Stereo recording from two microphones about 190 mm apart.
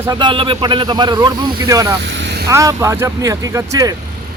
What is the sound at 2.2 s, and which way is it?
Vehicle, 65° right (ahead or behind).